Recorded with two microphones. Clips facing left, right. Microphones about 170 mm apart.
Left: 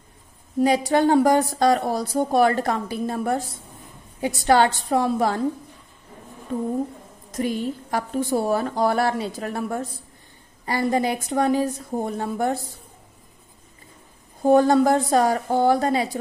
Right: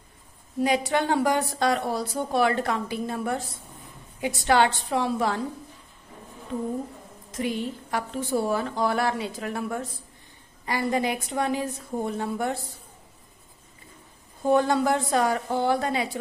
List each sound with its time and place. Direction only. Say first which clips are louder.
0.7 s a woman's voice: left 5 dB; 40° left (ahead or behind)
7.2 s a woman's voice: left 4 dB; 45° left (ahead or behind)
14.4 s a woman's voice: left 6 dB; 40° left (ahead or behind)